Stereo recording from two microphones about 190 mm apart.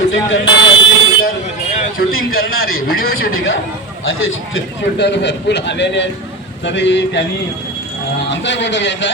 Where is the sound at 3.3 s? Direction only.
90° left.